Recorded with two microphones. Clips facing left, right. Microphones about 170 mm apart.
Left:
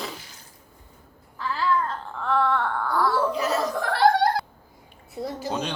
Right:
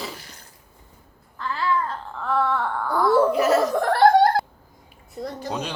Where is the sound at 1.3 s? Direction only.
Centre (ahead or behind).